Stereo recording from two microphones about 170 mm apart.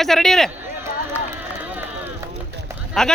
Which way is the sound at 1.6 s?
10° right (ahead or behind).